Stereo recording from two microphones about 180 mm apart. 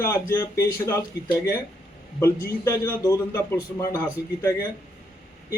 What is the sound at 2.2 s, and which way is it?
A man's voice, 15° left (ahead or behind).